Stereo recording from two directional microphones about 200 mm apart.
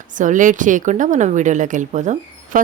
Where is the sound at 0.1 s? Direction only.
40° right (ahead or behind).